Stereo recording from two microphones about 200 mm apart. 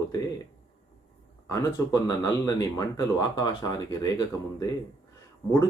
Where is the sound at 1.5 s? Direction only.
15° left (ahead or behind).